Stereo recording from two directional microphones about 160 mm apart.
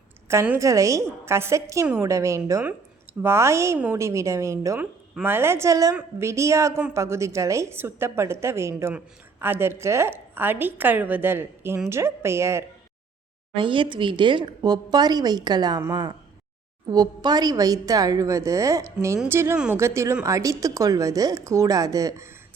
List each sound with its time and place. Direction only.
0.3 s a woman's voice: 15° right (ahead or behind)
13.6 s speech: 30° right (ahead or behind)